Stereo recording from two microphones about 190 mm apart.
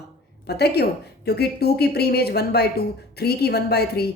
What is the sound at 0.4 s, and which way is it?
A woman's voice, 60° left (ahead or behind).